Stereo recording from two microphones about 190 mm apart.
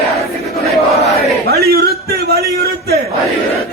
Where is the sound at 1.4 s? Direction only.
55° right (ahead or behind).